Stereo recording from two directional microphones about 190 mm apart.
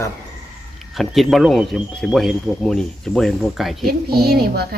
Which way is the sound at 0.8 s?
Centre (ahead or behind).